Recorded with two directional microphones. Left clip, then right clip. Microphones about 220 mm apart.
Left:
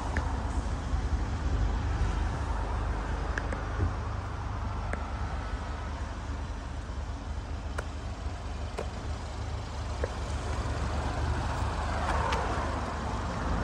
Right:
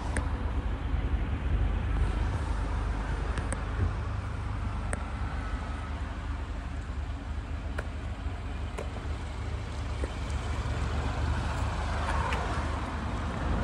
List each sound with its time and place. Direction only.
10.8 s vehicle: 50° left (ahead or behind)